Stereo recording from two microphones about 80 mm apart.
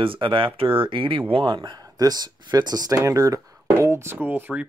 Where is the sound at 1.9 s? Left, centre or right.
Right.